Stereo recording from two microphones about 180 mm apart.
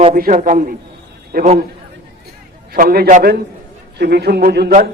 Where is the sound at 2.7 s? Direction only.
55° right (ahead or behind).